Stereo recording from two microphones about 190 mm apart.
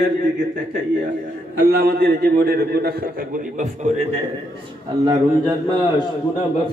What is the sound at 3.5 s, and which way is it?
Speech, 35° right (ahead or behind).